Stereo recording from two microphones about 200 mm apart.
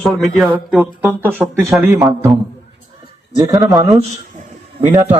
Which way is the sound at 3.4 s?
20° right (ahead or behind).